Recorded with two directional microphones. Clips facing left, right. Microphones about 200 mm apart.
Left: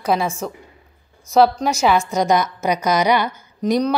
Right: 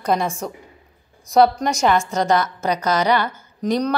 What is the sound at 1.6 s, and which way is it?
A woman's voice, 5° left (ahead or behind).